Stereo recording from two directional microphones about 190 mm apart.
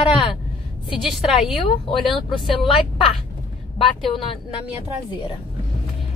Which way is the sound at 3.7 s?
30° left (ahead or behind).